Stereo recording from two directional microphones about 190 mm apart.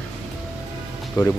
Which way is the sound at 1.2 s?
20° left (ahead or behind).